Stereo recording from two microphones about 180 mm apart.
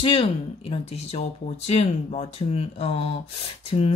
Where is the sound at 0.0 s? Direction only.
30° left (ahead or behind).